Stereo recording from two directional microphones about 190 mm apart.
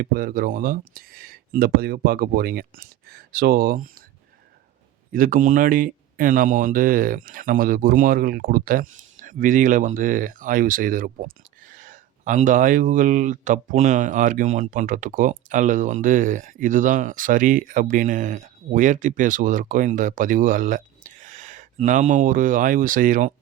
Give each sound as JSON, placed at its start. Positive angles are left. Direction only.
{"t": 0.0, "sound": "speech", "side_deg": -50}
{"t": 5.1, "sound": "speech", "side_deg": -45}